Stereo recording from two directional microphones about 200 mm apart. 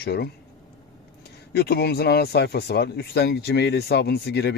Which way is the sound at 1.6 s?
55° left (ahead or behind).